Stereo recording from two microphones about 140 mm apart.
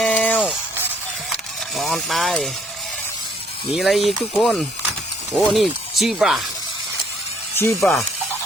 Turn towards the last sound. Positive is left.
turn(degrees=20)  # may be behind; listen again after turning